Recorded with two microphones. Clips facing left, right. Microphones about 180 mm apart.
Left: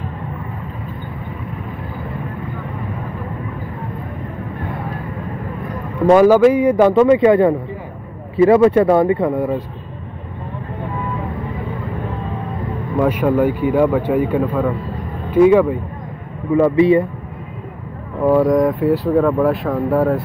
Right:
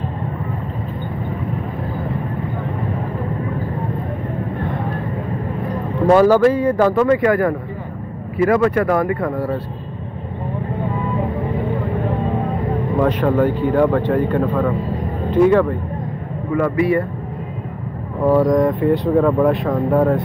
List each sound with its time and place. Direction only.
6.1 s a man's voice: 10° left (ahead or behind)
13.0 s a man's voice: 10° left (ahead or behind)
16.5 s speech: 25° left (ahead or behind)
18.2 s speech: 5° left (ahead or behind)